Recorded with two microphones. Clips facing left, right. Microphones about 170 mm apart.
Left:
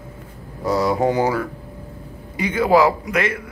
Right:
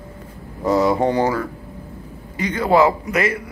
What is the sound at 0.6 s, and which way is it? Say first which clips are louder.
Speech: right 2 dB; centre (ahead or behind).